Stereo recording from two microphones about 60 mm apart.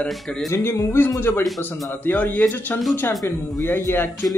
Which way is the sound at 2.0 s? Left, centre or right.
Left.